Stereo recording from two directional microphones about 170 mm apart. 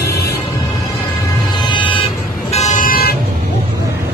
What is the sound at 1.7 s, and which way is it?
Vehicle, 30° left (ahead or behind).